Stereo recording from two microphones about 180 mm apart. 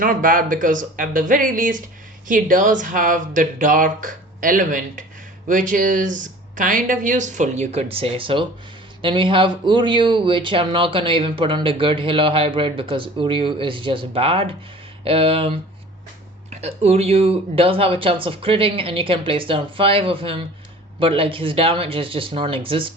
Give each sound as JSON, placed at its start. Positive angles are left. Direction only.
{"t": 0.0, "sound": "speech", "side_deg": -50}